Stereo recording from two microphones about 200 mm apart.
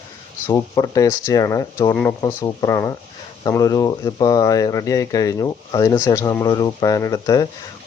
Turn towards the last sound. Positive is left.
turn(degrees=20)  # may be behind; listen again after turning